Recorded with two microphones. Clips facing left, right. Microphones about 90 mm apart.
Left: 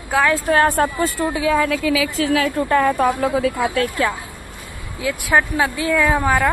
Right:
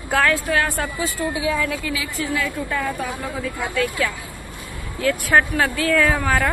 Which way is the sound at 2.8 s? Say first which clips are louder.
Left 12 dB; 55° left (ahead or behind).